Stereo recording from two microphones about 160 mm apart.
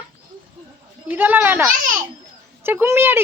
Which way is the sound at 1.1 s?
10° right (ahead or behind).